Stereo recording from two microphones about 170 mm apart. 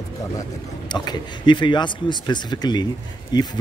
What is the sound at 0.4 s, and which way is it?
Speech, 25° left (ahead or behind).